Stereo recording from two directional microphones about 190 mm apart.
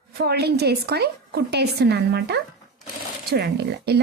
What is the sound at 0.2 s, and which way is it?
A woman's voice, 55° right (ahead or behind).